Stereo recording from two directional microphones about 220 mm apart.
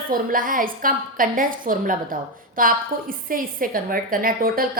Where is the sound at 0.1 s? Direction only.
40° right (ahead or behind).